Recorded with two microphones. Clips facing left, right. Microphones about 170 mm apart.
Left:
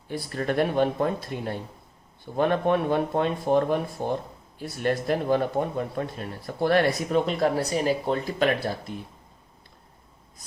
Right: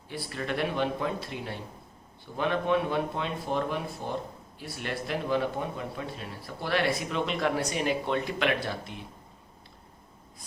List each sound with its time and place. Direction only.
0.1 s speech: 45° left (ahead or behind)